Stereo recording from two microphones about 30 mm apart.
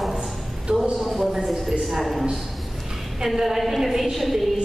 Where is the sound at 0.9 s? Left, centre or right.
Centre.